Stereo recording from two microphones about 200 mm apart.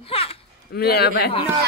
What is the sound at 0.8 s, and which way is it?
Speech, 50° left (ahead or behind).